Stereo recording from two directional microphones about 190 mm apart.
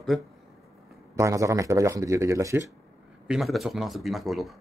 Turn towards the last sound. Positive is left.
turn(degrees=0)  # may be behind; listen again after turning